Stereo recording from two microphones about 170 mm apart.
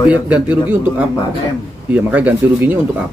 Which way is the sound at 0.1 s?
10° right (ahead or behind).